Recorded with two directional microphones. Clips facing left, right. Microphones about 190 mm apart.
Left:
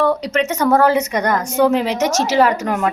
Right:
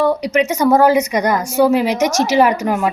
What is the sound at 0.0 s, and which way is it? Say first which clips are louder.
A woman's voice: right 2 dB; 10° right (ahead or behind).